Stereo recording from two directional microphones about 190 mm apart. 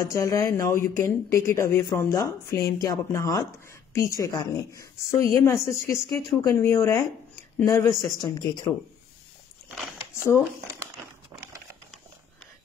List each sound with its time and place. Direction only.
0.1 s speech: 20° left (ahead or behind)
10.1 s speech: 15° left (ahead or behind)
10.4 s speech: 10° right (ahead or behind)